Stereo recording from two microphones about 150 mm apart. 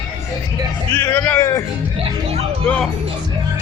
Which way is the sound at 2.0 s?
45° right (ahead or behind).